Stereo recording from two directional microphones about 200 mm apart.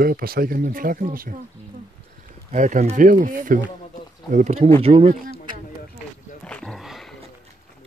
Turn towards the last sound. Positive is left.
turn(degrees=0)  # may be behind; listen again after turning